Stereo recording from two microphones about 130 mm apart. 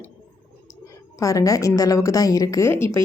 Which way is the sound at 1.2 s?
25° left (ahead or behind).